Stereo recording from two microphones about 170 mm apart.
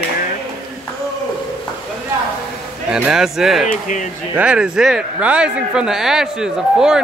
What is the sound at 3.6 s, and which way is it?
Speech, 50° left (ahead or behind).